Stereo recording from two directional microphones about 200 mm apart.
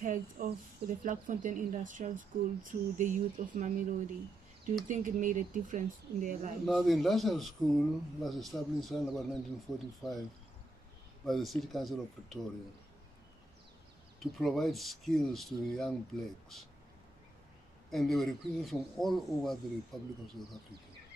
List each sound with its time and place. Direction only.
0.0 s speech: 40° right (ahead or behind)
4.8 s speech: 40° right (ahead or behind)
6.6 s speech: centre (ahead or behind)
11.2 s speech: centre (ahead or behind)
14.2 s speech: centre (ahead or behind)
17.8 s speech: centre (ahead or behind)